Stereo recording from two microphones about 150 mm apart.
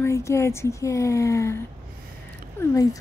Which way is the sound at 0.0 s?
20° left (ahead or behind).